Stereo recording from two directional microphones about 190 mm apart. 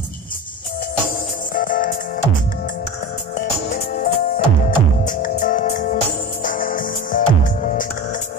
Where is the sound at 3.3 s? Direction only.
45° left (ahead or behind).